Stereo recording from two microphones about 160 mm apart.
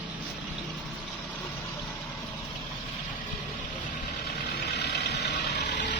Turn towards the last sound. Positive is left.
turn(degrees=90)